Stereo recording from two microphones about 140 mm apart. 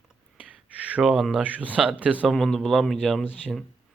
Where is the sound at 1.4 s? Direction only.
10° right (ahead or behind).